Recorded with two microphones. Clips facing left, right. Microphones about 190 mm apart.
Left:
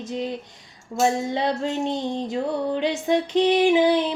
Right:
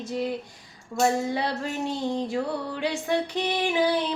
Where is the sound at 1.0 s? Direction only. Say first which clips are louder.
Left 2 dB; 20° left (ahead or behind).